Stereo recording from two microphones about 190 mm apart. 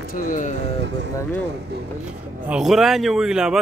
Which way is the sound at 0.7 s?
65° right (ahead or behind).